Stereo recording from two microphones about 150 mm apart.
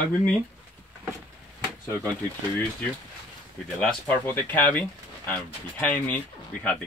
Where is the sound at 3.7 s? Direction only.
10° left (ahead or behind).